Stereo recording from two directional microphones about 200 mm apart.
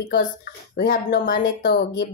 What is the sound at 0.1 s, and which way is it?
Speech, 45° left (ahead or behind).